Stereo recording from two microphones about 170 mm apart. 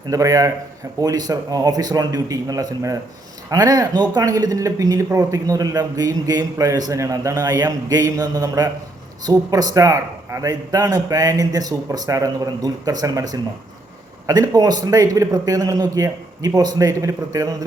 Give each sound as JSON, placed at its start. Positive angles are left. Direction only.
{"t": 0.1, "sound": "speech", "side_deg": -20}